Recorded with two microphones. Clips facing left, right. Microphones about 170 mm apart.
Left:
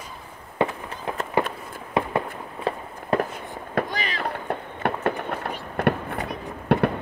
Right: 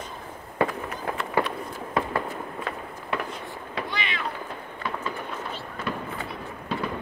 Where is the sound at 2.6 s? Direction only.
40° left (ahead or behind).